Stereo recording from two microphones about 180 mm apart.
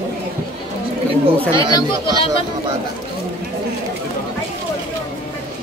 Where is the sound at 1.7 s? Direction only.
25° left (ahead or behind).